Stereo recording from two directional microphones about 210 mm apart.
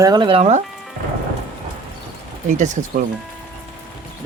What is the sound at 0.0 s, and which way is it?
Speech, 20° right (ahead or behind).